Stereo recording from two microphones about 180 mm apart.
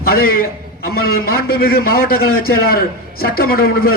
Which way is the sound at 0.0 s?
55° left (ahead or behind).